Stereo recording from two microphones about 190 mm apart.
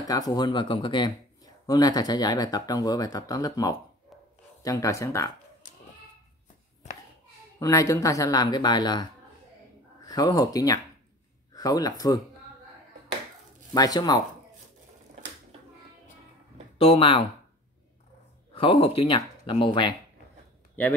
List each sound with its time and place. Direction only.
0.0 s a man's voice: 20° left (ahead or behind)
7.5 s a man's voice: 15° left (ahead or behind)
10.0 s a man's voice: 20° left (ahead or behind)
13.7 s a man's voice: 20° left (ahead or behind)
16.7 s speech: 30° left (ahead or behind)
18.5 s a man's voice: 30° left (ahead or behind)